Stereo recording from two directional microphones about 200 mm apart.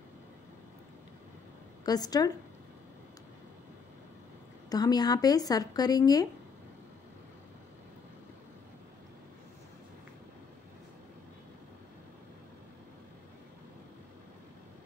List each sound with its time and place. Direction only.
1.9 s speech: 20° left (ahead or behind)
4.6 s speech: 20° left (ahead or behind)